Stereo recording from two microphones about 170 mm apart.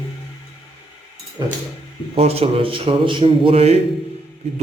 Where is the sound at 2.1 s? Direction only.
35° right (ahead or behind).